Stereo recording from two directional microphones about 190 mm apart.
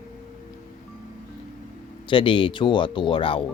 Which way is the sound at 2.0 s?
25° left (ahead or behind).